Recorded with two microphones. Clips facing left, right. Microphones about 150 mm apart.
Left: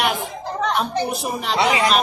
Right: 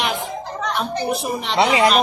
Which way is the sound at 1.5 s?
35° right (ahead or behind).